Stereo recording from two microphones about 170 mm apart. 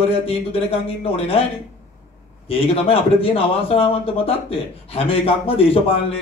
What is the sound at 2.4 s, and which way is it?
A man's voice, 35° left (ahead or behind).